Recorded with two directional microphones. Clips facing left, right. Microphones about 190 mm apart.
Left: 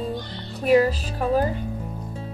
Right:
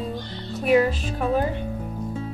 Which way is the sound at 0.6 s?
40° left (ahead or behind).